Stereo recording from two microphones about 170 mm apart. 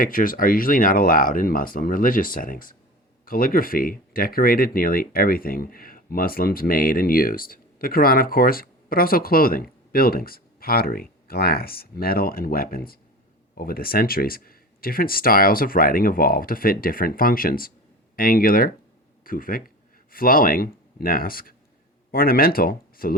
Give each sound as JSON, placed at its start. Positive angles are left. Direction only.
{"t": 0.0, "sound": "speech", "side_deg": 55}